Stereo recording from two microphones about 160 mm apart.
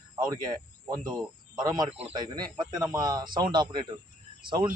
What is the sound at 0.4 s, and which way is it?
Speech, 25° right (ahead or behind).